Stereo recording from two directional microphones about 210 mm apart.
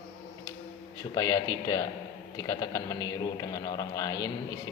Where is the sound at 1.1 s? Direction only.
15° left (ahead or behind).